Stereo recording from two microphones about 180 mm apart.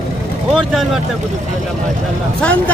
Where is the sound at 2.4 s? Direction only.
5° left (ahead or behind).